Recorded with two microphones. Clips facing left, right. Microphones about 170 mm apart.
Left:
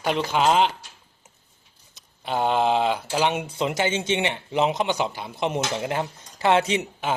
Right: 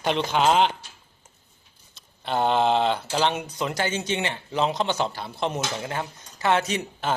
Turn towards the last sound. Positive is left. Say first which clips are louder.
# left 3 dB
turn(degrees=25)  # may be behind; listen again after turning